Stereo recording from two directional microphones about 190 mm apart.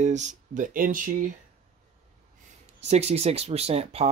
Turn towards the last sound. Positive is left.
turn(degrees=-35)  # may be behind; listen again after turning